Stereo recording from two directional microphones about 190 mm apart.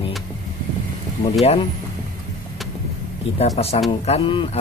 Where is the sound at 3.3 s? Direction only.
35° left (ahead or behind).